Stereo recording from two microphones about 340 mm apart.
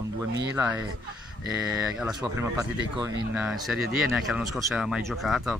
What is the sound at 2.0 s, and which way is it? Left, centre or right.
Speech, centre.